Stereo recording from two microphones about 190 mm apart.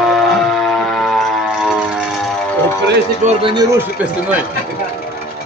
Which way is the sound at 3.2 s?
25° right (ahead or behind).